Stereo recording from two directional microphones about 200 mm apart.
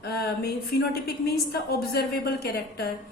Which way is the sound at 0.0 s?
50° left (ahead or behind).